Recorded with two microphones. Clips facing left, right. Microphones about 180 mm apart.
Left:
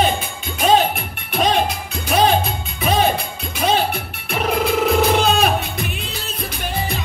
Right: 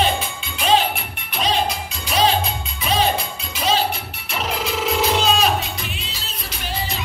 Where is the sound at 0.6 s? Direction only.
50° left (ahead or behind).